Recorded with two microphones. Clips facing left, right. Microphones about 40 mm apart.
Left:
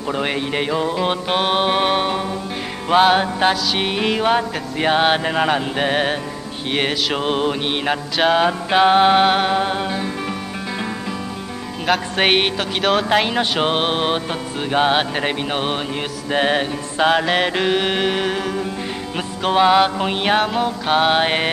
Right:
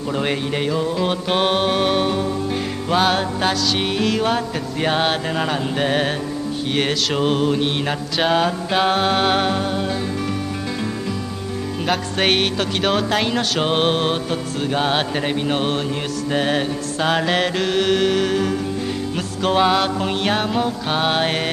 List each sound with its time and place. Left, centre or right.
0.1 s music: centre
1.3 s music: centre
1.6 s music: centre
8.2 s music: centre
9.6 s music: left
12.2 s music: centre
12.5 s speech: centre
13.1 s music: centre